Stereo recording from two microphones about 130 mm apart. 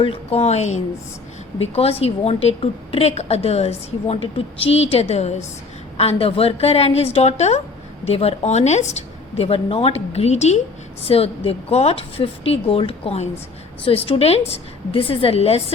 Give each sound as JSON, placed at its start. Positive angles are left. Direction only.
{"t": 0.0, "sound": "a woman's voice", "side_deg": 45}
{"t": 6.0, "sound": "a woman's voice", "side_deg": 50}